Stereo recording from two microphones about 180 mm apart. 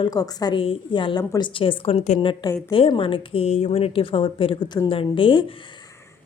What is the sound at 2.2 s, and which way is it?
A woman's voice, 25° left (ahead or behind).